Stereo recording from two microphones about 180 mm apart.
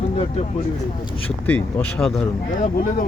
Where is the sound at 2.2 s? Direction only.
45° left (ahead or behind).